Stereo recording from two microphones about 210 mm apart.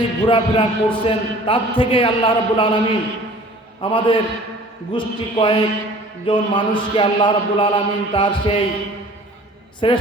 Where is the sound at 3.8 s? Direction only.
25° left (ahead or behind).